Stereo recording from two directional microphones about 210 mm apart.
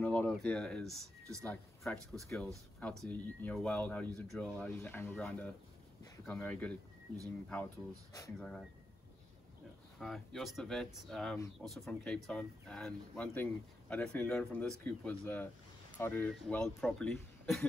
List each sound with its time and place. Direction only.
0.0 s speech: 5° left (ahead or behind)
9.9 s speech: centre (ahead or behind)